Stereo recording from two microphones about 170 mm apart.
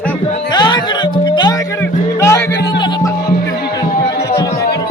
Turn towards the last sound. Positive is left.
turn(degrees=15)  # may be behind; listen again after turning